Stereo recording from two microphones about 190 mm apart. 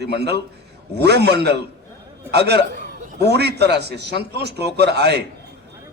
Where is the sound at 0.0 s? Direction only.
60° right (ahead or behind).